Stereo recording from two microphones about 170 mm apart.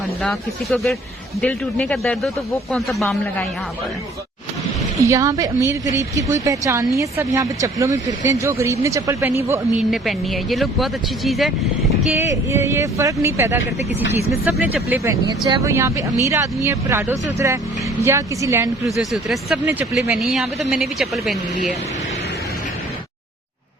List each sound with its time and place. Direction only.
0.2 s speech: 5° left (ahead or behind)
5.0 s speech: 20° right (ahead or behind)
9.9 s speech: centre (ahead or behind)
12.1 s speech: 15° right (ahead or behind)
18.9 s speech: centre (ahead or behind)